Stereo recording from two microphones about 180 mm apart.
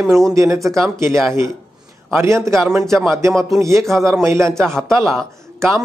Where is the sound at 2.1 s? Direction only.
15° right (ahead or behind).